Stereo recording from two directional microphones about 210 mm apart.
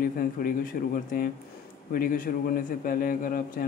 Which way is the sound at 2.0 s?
40° left (ahead or behind).